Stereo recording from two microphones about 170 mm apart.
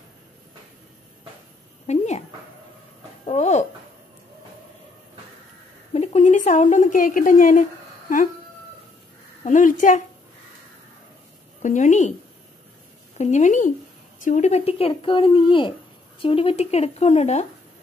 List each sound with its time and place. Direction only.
1.9 s speech: 40° left (ahead or behind)
3.3 s a woman's voice: 40° left (ahead or behind)
5.9 s a woman's voice: 45° left (ahead or behind)
9.4 s a woman's voice: 45° left (ahead or behind)
11.6 s a woman's voice: 45° left (ahead or behind)
13.2 s a woman's voice: 45° left (ahead or behind)